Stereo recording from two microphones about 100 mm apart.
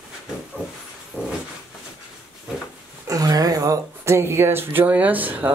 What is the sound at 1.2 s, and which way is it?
Dog, 20° right (ahead or behind).